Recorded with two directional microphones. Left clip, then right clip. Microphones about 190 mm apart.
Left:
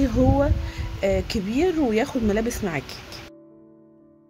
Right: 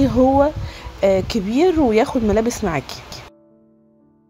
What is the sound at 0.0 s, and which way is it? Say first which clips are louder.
Speech: right 7 dB; 15° right (ahead or behind).